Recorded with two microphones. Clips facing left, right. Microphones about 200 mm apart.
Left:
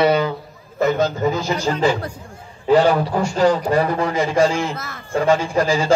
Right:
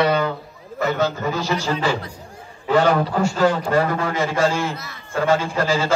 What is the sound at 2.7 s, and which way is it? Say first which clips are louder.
A man's voice: left 2 dB; 10° left (ahead or behind).